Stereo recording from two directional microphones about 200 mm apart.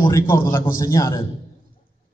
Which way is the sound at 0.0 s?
15° left (ahead or behind).